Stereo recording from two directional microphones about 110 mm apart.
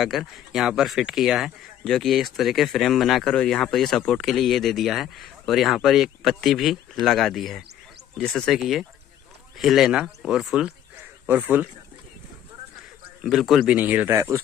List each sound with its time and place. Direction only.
0.0 s speech: centre (ahead or behind); by 11.7 s 15° right (ahead or behind)
13.2 s speech: centre (ahead or behind)
13.7 s speech: 15° right (ahead or behind)
14.1 s speech: 30° right (ahead or behind)